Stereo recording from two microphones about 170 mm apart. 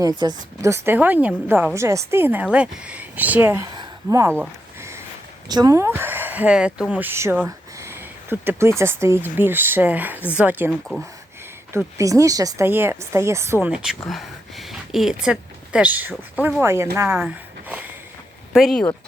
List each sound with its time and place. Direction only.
0.0 s speech: 25° right (ahead or behind)
3.8 s a sound: 15° right (ahead or behind)
5.5 s speech: 20° right (ahead or behind)
10.7 s speech: centre (ahead or behind)
11.7 s speech: 15° right (ahead or behind)
14.1 s a sound: centre (ahead or behind)
16.6 s speech: 15° right (ahead or behind)
18.5 s speech: centre (ahead or behind)